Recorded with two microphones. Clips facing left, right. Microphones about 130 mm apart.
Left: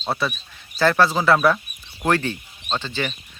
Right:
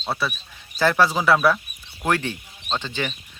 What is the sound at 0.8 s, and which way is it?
Speech, 10° right (ahead or behind).